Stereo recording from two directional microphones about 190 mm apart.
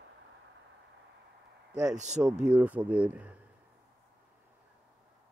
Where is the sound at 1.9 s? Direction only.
40° right (ahead or behind).